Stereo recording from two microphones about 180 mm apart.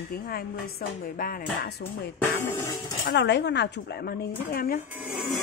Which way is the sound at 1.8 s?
65° left (ahead or behind).